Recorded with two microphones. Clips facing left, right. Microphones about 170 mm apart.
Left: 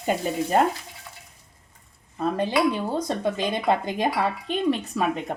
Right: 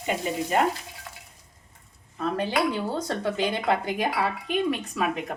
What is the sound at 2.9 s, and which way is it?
Speech, 15° left (ahead or behind).